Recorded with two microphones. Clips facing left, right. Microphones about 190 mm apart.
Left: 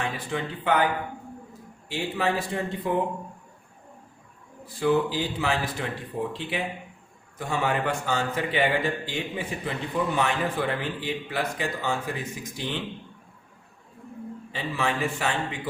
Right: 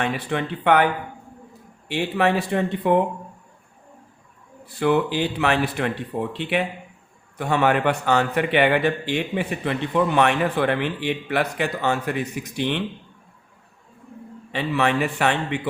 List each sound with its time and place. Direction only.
0.0 s a man's voice: 65° right (ahead or behind)
1.9 s a man's voice: 65° right (ahead or behind)
4.6 s a man's voice: 65° right (ahead or behind)
14.5 s a man's voice: 65° right (ahead or behind)